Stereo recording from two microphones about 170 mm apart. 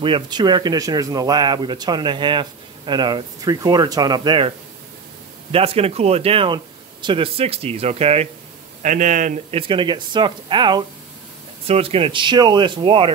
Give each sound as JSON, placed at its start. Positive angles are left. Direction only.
{"t": 0.0, "sound": "speech", "side_deg": -25}
{"t": 8.8, "sound": "speech", "side_deg": -50}
{"t": 9.6, "sound": "speech", "side_deg": -30}